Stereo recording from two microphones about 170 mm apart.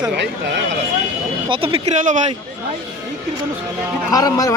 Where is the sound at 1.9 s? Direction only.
45° right (ahead or behind).